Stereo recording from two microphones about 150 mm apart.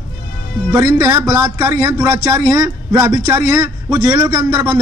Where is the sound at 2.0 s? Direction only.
15° right (ahead or behind).